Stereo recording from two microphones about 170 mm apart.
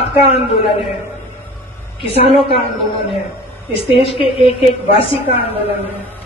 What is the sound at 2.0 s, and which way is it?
Speech, 35° left (ahead or behind).